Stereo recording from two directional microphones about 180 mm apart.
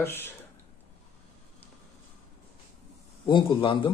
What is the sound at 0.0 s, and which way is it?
Speech, 10° left (ahead or behind).